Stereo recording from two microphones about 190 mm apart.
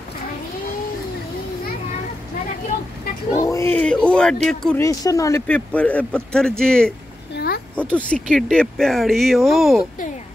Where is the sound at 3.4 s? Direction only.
15° left (ahead or behind).